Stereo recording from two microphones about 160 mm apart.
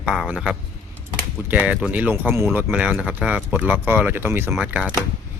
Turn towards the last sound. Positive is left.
turn(degrees=-5)  # may be behind; listen again after turning